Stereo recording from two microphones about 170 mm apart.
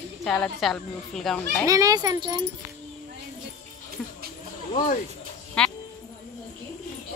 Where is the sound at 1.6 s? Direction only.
20° right (ahead or behind).